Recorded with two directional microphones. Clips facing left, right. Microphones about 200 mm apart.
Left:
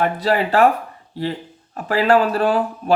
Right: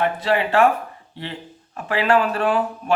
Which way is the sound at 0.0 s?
40° left (ahead or behind).